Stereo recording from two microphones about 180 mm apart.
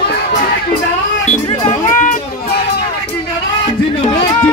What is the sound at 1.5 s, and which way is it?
Music, 40° left (ahead or behind).